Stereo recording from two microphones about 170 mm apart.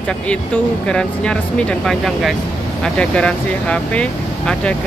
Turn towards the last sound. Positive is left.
turn(degrees=5)  # may be behind; listen again after turning